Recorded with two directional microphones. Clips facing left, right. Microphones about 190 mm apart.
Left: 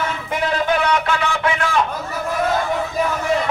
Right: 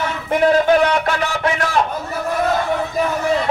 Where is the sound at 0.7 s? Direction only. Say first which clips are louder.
Right 3 dB; 40° right (ahead or behind).